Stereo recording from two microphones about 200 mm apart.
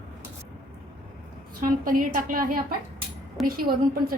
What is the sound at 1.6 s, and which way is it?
A woman's voice, 45° right (ahead or behind).